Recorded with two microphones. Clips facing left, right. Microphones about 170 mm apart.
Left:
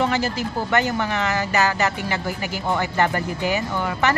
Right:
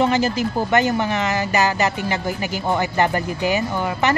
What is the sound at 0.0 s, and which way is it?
Speech, 20° right (ahead or behind).